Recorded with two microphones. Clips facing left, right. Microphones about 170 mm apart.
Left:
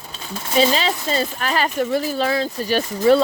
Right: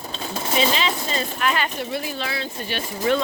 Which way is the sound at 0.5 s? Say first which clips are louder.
Left 5 dB; 40° left (ahead or behind).